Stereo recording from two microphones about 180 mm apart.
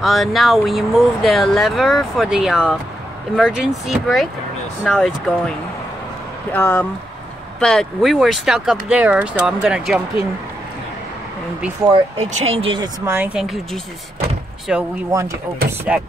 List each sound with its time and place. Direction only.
0.0 s speech: centre (ahead or behind)
6.5 s speech: 10° left (ahead or behind)
7.6 s speech: centre (ahead or behind)
11.9 s speech: 30° right (ahead or behind)
13.0 s speech: 10° right (ahead or behind)
13.4 s speech: centre (ahead or behind)
15.0 s speech: 15° right (ahead or behind)
15.9 s speech: 5° right (ahead or behind)